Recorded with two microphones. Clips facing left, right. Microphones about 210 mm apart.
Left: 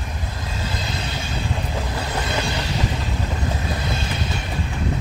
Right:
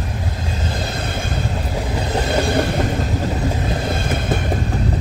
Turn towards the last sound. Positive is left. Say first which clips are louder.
# right 6 dB
turn(degrees=-55)  # may be behind; listen again after turning